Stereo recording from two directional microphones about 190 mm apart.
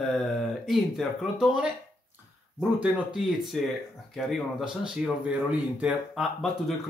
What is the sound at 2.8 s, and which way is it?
Speech, 5° right (ahead or behind).